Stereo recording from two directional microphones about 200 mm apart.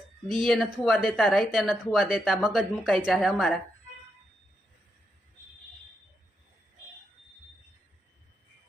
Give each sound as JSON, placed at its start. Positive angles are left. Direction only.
{"t": 0.3, "sound": "speech", "side_deg": 0}